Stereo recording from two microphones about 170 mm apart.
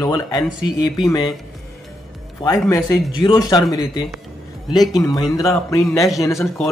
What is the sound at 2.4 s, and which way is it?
Speech, 20° left (ahead or behind).